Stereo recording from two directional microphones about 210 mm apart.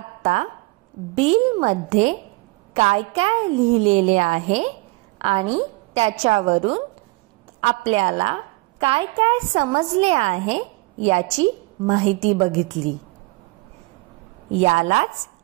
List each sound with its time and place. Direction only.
0.2 s a woman's voice: 30° right (ahead or behind)
7.9 s a woman's voice: 35° right (ahead or behind)
14.6 s a woman's voice: 30° right (ahead or behind)